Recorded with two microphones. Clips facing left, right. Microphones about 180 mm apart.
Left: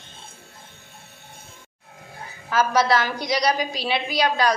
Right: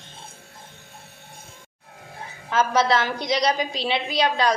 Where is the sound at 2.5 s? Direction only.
25° right (ahead or behind).